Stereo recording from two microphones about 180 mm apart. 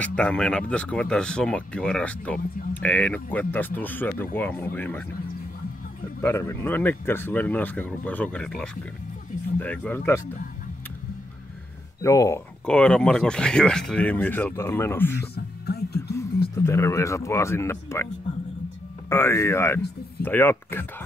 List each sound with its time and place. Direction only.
0.0 s speech: 5° left (ahead or behind)
6.2 s speech: 15° left (ahead or behind)
12.0 s speech: 15° left (ahead or behind)
12.6 s speech: 5° left (ahead or behind)
15.3 s speech: 65° left (ahead or behind)
16.5 s speech: 15° left (ahead or behind)
19.0 s speech: 15° left (ahead or behind)